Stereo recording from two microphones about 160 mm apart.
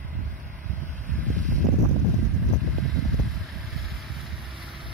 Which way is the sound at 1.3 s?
55° right (ahead or behind).